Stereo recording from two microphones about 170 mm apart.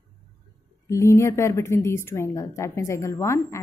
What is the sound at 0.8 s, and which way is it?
A woman's voice, 15° left (ahead or behind).